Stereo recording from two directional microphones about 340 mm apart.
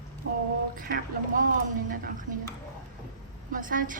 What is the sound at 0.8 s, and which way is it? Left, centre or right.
Speech, right.